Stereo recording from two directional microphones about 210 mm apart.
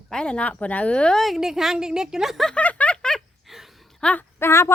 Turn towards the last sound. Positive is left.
turn(degrees=10)  # may be behind; listen again after turning